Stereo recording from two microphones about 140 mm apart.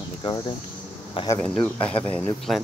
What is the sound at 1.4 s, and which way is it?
Speech, 5° left (ahead or behind).